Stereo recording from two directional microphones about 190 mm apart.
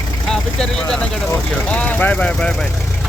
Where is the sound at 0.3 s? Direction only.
5° left (ahead or behind).